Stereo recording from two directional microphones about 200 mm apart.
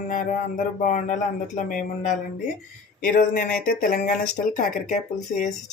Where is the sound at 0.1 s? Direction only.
40° left (ahead or behind).